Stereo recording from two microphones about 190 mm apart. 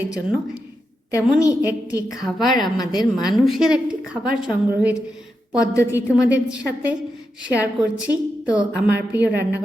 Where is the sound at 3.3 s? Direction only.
Centre (ahead or behind).